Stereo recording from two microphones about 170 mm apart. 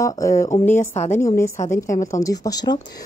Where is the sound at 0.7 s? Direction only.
40° left (ahead or behind).